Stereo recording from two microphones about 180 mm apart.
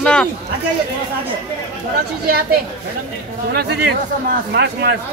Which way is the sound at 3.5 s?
65° right (ahead or behind).